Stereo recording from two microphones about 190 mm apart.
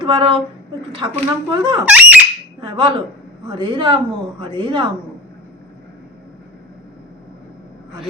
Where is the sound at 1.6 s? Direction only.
25° right (ahead or behind).